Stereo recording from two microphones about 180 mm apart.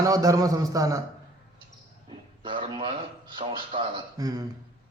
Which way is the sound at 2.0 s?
30° right (ahead or behind).